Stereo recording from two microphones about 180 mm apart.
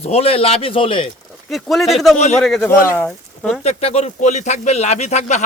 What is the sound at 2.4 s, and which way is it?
A man's voice, 5° left (ahead or behind).